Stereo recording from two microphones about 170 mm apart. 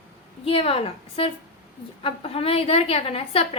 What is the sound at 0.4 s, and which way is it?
A woman's voice, 35° left (ahead or behind).